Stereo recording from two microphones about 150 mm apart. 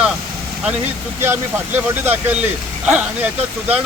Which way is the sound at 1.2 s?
15° right (ahead or behind).